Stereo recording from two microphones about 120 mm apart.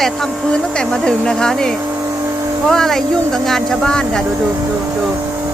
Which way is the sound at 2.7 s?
5° left (ahead or behind).